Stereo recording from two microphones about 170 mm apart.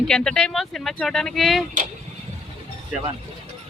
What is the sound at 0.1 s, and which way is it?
Speech, 5° left (ahead or behind).